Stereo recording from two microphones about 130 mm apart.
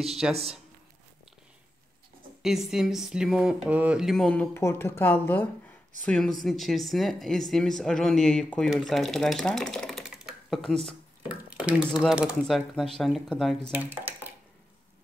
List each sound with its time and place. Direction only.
0.3 s speech: 50° right (ahead or behind)
2.4 s speech: centre (ahead or behind)
4.6 s speech: 20° left (ahead or behind)
6.0 s speech: 5° left (ahead or behind)
13.7 s speech: 15° right (ahead or behind)